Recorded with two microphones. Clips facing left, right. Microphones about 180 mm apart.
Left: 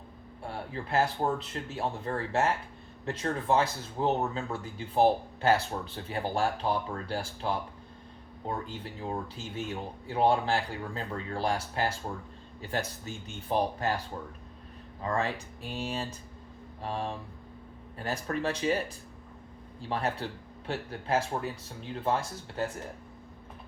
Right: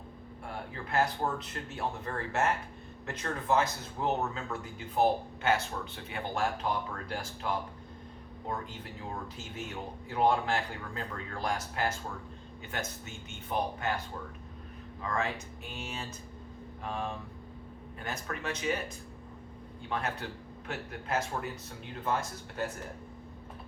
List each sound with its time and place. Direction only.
0.4 s speech: 30° left (ahead or behind)
10.1 s speech: 30° left (ahead or behind)
15.0 s speech: 35° left (ahead or behind)
19.9 s speech: 35° left (ahead or behind)